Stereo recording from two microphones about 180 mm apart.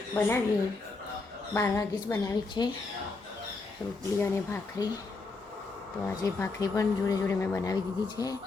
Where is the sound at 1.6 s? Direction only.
15° left (ahead or behind).